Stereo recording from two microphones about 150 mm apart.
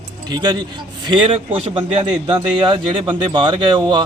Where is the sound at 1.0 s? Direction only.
35° right (ahead or behind).